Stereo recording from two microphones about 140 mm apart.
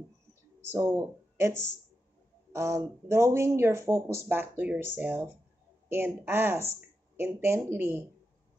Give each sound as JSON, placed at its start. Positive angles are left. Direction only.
{"t": 0.7, "sound": "speech", "side_deg": -20}